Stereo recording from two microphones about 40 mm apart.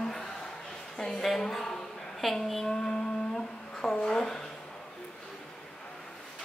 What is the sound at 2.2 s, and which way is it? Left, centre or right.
Speech, centre.